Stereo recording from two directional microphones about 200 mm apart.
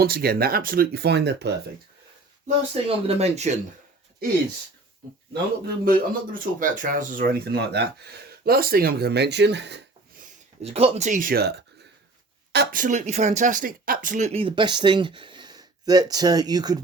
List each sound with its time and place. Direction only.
0.0 s speech: 50° right (ahead or behind)
2.8 s speech: 30° right (ahead or behind)
5.3 s speech: 50° right (ahead or behind)
10.6 s speech: 30° right (ahead or behind)